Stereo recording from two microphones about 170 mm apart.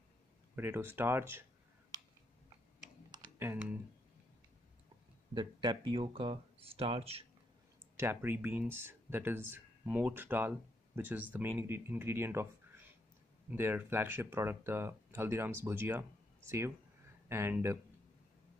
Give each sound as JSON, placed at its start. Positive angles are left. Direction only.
{"t": 0.6, "sound": "speech", "side_deg": -15}
{"t": 3.3, "sound": "speech", "side_deg": -10}
{"t": 5.3, "sound": "speech", "side_deg": -25}
{"t": 7.9, "sound": "speech", "side_deg": -15}